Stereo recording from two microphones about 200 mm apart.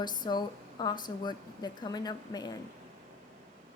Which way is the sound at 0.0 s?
20° left (ahead or behind).